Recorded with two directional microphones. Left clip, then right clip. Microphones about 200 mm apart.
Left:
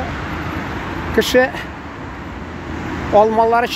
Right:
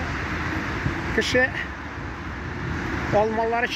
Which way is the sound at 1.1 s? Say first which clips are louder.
Left 7 dB; 35° left (ahead or behind).